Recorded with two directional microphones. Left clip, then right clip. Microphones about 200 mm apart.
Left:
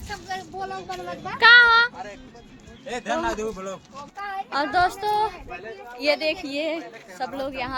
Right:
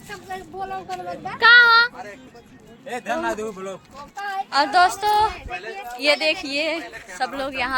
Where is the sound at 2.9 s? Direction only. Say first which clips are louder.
Right 1 dB; 20° right (ahead or behind).